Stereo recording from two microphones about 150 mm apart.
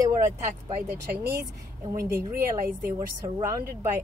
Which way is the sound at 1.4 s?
20° right (ahead or behind).